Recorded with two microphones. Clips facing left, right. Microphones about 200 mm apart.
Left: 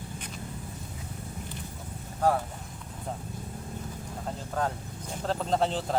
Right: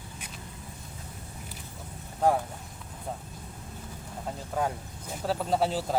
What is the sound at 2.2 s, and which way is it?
Speech, 15° right (ahead or behind).